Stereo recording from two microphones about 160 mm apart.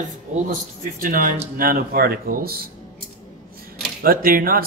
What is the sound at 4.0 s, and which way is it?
Speech, 65° right (ahead or behind).